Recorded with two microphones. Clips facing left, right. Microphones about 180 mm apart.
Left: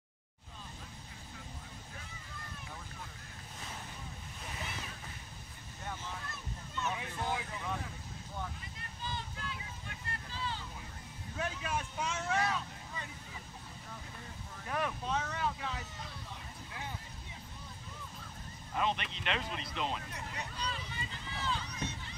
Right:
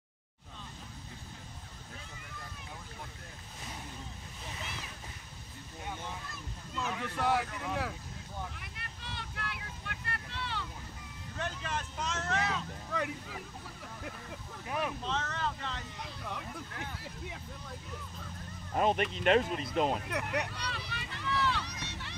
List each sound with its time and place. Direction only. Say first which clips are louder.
6.8 s a sound: right 4 dB; 75° right (ahead or behind)
8.5 s vehicle: even; 70° right (ahead or behind)
11.3 s vehicle: even; 5° left (ahead or behind)
12.9 s a sound: right 13 dB; 75° right (ahead or behind)
14.7 s vehicle: right 1 dB; 10° right (ahead or behind)
15.0 s wind noise: even; 10° left (ahead or behind)
16.0 s vehicle: right 6 dB; 70° right (ahead or behind)
18.7 s a sound: right 6 dB; 45° right (ahead or behind)
19.1 s speech: right 11 dB; 45° right (ahead or behind)
20.1 s run: right 9 dB; 70° right (ahead or behind)